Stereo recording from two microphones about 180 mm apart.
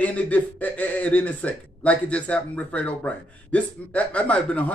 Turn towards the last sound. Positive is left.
turn(degrees=5)  # may be behind; listen again after turning